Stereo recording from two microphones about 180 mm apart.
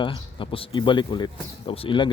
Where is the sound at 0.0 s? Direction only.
30° left (ahead or behind).